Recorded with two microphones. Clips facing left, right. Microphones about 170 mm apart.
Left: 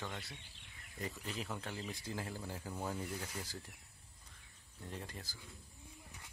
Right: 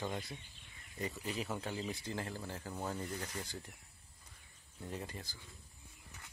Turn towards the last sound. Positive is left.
turn(degrees=0)  # may be behind; listen again after turning